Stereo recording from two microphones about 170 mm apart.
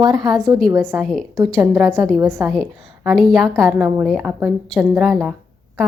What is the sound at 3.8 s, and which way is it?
Speech, 5° right (ahead or behind).